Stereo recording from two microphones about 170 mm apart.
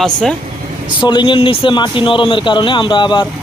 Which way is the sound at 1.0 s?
30° left (ahead or behind).